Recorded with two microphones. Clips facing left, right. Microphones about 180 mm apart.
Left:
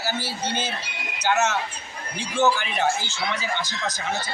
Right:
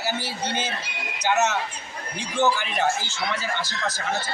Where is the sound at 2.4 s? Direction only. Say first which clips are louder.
Left 1 dB; 15° right (ahead or behind).